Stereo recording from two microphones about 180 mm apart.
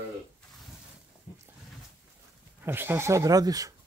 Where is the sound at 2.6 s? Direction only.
10° right (ahead or behind).